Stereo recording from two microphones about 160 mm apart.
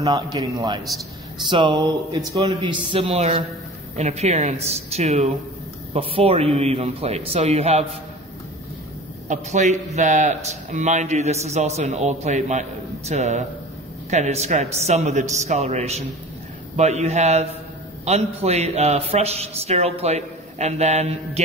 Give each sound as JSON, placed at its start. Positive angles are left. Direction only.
{"t": 0.0, "sound": "a man's voice", "side_deg": -25}
{"t": 9.3, "sound": "a man's voice", "side_deg": -50}